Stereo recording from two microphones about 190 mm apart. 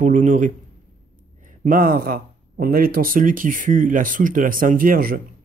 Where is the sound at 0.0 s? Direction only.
40° right (ahead or behind).